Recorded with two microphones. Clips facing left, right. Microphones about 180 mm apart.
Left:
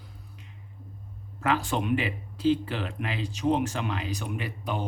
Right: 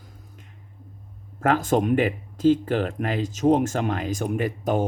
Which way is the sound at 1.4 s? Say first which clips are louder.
Right 6 dB; 45° right (ahead or behind).